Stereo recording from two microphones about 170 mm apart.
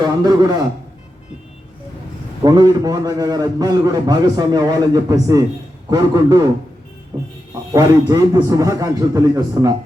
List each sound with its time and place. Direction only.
0.0 s a man's voice: 25° right (ahead or behind)
2.4 s a man's voice: 20° right (ahead or behind)
7.7 s a man's voice: 20° right (ahead or behind)